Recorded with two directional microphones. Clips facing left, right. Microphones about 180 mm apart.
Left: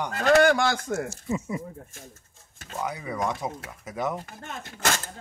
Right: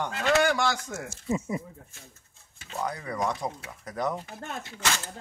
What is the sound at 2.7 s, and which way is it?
Speech, 10° left (ahead or behind).